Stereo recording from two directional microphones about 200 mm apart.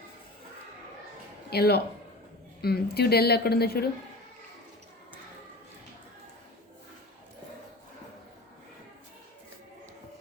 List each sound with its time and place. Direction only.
1.5 s a woman's voice: 55° left (ahead or behind)